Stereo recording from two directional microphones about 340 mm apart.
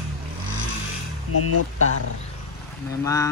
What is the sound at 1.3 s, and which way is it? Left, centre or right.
Speech, left.